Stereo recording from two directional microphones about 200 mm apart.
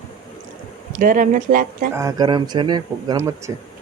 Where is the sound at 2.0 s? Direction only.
20° right (ahead or behind).